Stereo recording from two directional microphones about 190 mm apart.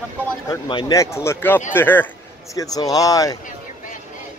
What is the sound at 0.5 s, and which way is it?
A man's voice, 25° left (ahead or behind).